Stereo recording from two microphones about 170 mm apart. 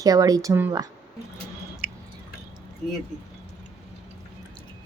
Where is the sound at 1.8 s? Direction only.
10° right (ahead or behind).